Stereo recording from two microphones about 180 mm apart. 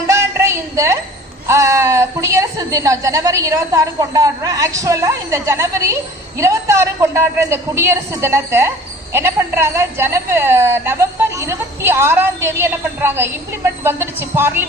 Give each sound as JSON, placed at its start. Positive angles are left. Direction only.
{"t": 0.1, "sound": "music", "side_deg": -15}
{"t": 1.5, "sound": "a woman's voice", "side_deg": -15}